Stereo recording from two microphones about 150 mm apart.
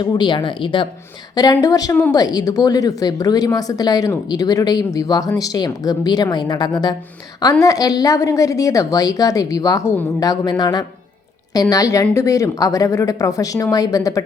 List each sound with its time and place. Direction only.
0.0 s speech: 30° left (ahead or behind)